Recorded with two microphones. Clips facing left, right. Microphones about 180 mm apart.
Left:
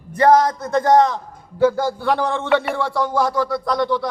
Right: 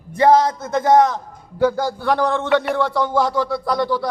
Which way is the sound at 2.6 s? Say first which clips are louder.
Right 2 dB; 5° left (ahead or behind).